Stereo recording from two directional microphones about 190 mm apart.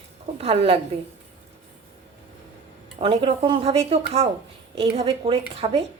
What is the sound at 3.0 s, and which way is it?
Speech, 30° right (ahead or behind).